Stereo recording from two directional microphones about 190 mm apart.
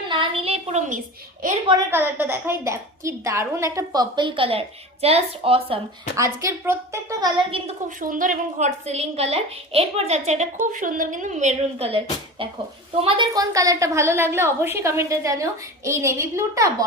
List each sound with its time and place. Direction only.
0.1 s a sound: 30° right (ahead or behind)
1.9 s a woman's voice: 10° right (ahead or behind); by 5.8 s 30° right (ahead or behind)
6.1 s a woman's voice: 15° right (ahead or behind)
7.9 s a woman's voice: 45° right (ahead or behind); by 16.6 s 15° right (ahead or behind)